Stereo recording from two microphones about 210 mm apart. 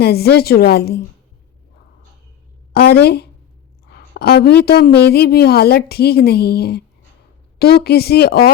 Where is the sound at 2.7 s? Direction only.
50° left (ahead or behind).